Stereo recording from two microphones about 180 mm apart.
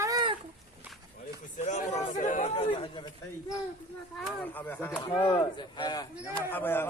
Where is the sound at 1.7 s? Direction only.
40° left (ahead or behind).